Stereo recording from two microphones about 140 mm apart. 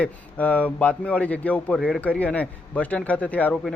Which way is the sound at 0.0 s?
10° left (ahead or behind).